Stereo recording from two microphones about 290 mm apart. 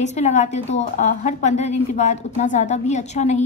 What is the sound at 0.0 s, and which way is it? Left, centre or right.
A woman's voice, left.